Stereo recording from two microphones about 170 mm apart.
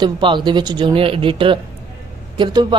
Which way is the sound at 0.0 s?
30° right (ahead or behind).